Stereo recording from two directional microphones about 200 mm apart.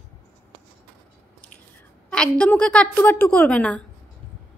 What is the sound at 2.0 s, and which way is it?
A woman's voice, 5° left (ahead or behind).